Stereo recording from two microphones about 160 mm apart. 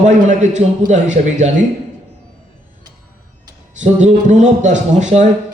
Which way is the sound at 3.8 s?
50° right (ahead or behind).